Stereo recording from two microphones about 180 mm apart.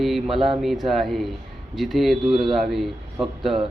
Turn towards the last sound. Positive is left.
turn(degrees=0)  # may be behind; listen again after turning